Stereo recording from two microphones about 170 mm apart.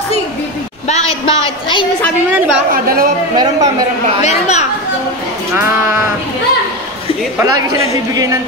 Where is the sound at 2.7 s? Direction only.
60° right (ahead or behind).